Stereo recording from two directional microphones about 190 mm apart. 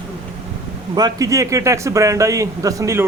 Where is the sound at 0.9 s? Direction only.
20° right (ahead or behind).